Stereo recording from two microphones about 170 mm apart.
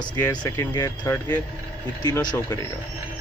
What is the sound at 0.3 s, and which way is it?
Speech, 25° left (ahead or behind).